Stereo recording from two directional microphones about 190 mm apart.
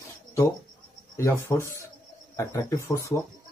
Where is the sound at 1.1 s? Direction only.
15° left (ahead or behind).